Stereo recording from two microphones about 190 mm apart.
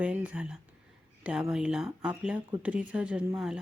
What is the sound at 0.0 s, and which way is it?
A woman's voice, 5° right (ahead or behind).